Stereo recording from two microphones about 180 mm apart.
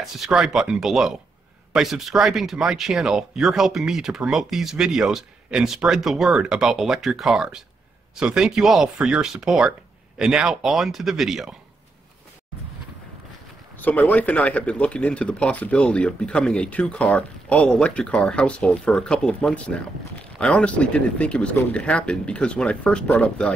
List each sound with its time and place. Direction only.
0.0 s speech: centre (ahead or behind)
13.7 s speech: 10° left (ahead or behind)